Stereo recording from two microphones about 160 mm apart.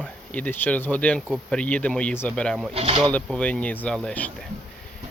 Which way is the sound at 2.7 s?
40° right (ahead or behind).